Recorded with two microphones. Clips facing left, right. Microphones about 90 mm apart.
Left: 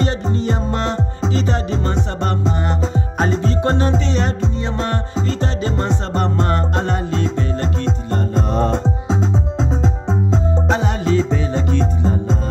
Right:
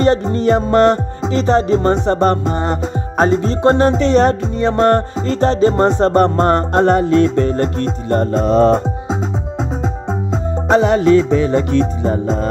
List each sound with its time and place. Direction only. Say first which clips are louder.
0.0 s music: right 7 dB; 50° right (ahead or behind)
1.3 s music: right 10 dB; 40° right (ahead or behind)
8.5 s music: right 10 dB; 90° right
10.8 s music: right 7 dB; 65° right (ahead or behind)